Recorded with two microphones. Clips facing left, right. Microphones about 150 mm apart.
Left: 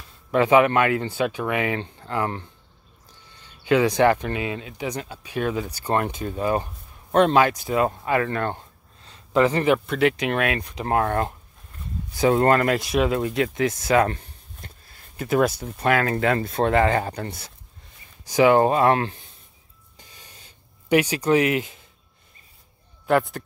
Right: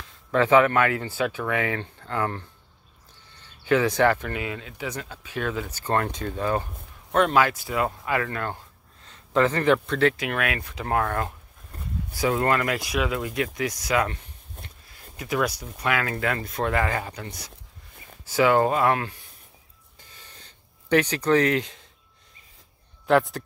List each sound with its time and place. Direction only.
0.3 s speech: 15° left (ahead or behind)
3.6 s speech: 20° left (ahead or behind)
7.1 s speech: 25° left (ahead or behind)
9.3 s speech: 15° left (ahead or behind)
11.7 s a sound: 40° right (ahead or behind)
12.1 s speech: 25° left (ahead or behind)
12.4 s speech: 40° left (ahead or behind)
15.1 s speech: 35° left (ahead or behind)
17.0 s speech: 45° left (ahead or behind)
18.2 s speech: 20° left (ahead or behind)
20.0 s a sound: 15° left (ahead or behind)
23.0 s speech: centre (ahead or behind)